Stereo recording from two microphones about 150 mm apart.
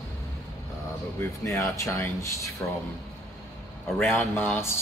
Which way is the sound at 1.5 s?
20° left (ahead or behind).